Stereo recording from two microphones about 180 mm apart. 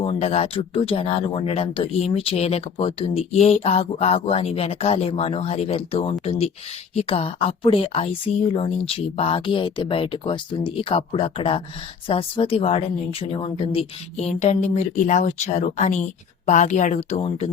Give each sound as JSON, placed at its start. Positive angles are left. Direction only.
{"t": 0.0, "sound": "speech", "side_deg": 35}